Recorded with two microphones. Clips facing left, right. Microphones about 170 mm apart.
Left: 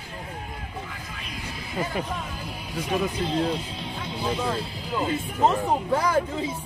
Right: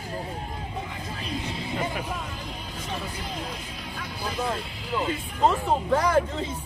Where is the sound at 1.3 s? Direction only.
25° right (ahead or behind).